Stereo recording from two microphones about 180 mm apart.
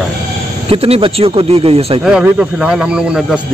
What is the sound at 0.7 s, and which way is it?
A man's voice, 30° right (ahead or behind).